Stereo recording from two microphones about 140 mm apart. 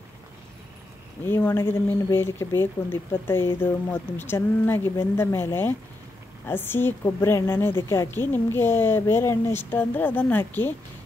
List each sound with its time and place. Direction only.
1.2 s speech: 15° left (ahead or behind)